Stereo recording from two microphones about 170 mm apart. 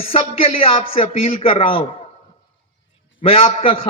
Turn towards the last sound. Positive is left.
turn(degrees=35)  # may be behind; listen again after turning